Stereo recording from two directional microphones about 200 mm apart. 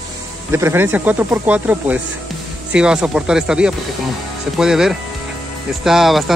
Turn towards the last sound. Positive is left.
turn(degrees=0)  # may be behind; listen again after turning